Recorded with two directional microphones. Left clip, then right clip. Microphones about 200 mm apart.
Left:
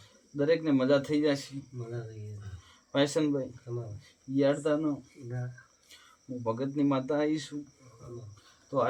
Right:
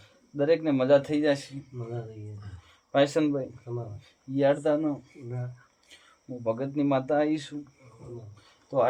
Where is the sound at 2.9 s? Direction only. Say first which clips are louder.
Right 4 dB; 15° left (ahead or behind).